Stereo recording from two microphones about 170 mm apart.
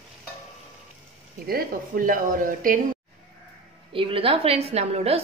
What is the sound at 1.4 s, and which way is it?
Speech, 60° right (ahead or behind).